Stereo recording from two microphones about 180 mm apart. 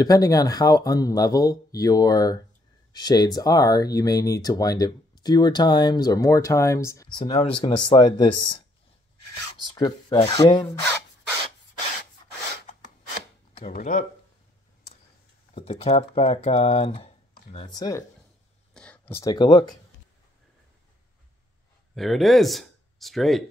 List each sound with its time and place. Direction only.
0.0 s speech: 20° left (ahead or behind)
9.8 s speech: 20° left (ahead or behind)
13.6 s speech: 50° left (ahead or behind)
15.5 s speech: 35° left (ahead or behind)
18.7 s a sound: 5° left (ahead or behind)
19.3 s speech: 25° left (ahead or behind)
21.9 s speech: centre (ahead or behind)